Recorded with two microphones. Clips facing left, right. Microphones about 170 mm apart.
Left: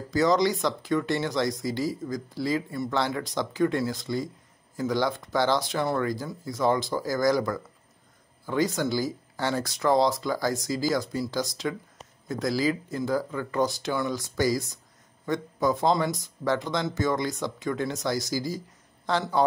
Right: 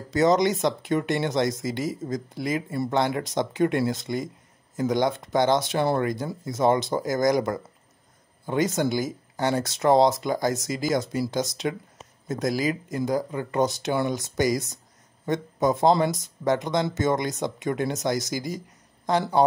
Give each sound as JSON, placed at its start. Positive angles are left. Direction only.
{"t": 0.1, "sound": "speech", "side_deg": -25}